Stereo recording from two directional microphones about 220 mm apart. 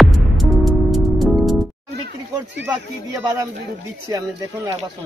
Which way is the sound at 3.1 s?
15° right (ahead or behind).